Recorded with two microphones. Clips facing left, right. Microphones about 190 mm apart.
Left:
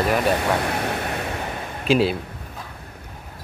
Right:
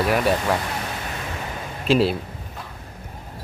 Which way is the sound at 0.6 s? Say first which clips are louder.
Left 5 dB; 60° left (ahead or behind).